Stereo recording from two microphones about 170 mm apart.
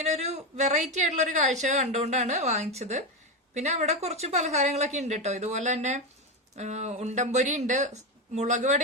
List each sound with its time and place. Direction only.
0.0 s a woman's voice: 40° right (ahead or behind)